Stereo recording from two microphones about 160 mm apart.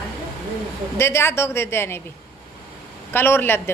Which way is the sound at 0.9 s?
15° left (ahead or behind).